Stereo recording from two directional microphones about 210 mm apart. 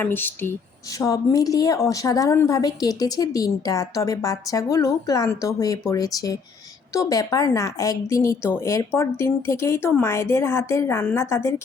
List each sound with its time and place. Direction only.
0.0 s a woman's voice: 10° left (ahead or behind)